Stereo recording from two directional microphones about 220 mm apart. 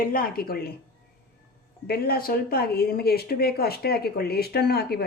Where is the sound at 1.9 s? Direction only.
45° left (ahead or behind).